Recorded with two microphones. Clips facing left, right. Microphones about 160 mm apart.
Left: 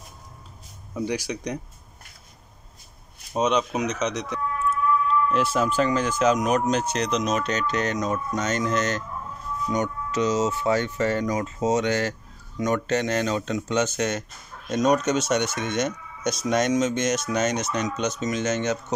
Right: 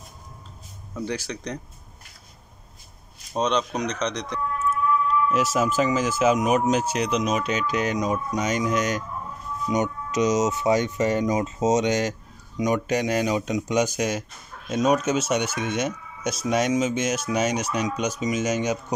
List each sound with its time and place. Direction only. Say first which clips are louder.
0.9 s speech: left 2 dB; 10° left (ahead or behind)
3.3 s speech: left 1 dB; 5° left (ahead or behind)
5.3 s speech: even; 5° right (ahead or behind)